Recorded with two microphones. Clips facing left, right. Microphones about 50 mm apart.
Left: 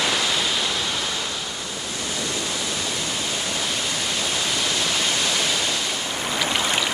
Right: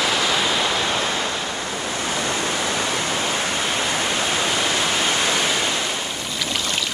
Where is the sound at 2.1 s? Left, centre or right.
Right.